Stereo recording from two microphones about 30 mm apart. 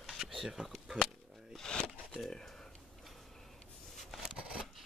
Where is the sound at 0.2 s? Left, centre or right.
Centre.